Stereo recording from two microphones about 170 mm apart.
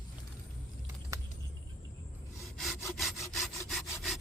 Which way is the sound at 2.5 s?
Centre (ahead or behind).